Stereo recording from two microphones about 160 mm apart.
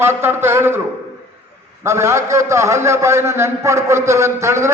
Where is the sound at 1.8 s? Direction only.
15° right (ahead or behind).